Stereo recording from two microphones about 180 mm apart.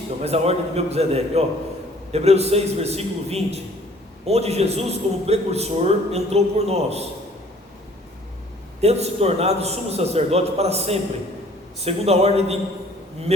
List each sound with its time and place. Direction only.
0.2 s a man's voice: 35° right (ahead or behind)
8.8 s a man's voice: 35° right (ahead or behind)